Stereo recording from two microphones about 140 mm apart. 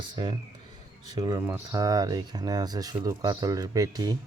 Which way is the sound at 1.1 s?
25° right (ahead or behind).